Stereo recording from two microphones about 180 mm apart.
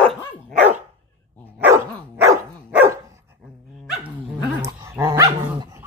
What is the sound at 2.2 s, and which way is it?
Dog, 15° right (ahead or behind).